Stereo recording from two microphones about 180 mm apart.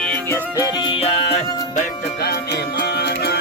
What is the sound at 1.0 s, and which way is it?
Music, 35° left (ahead or behind).